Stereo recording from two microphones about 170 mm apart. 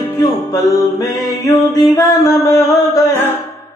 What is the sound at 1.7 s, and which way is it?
Music, 20° left (ahead or behind).